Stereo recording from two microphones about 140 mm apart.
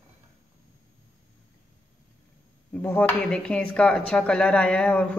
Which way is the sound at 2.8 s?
15° left (ahead or behind).